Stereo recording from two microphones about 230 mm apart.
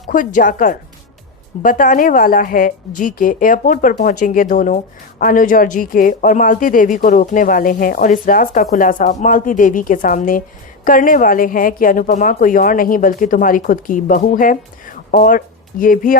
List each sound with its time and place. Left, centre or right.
0.1 s a woman's voice: left